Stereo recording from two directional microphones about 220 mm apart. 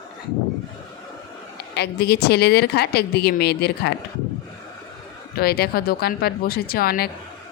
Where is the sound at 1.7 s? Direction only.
50° left (ahead or behind).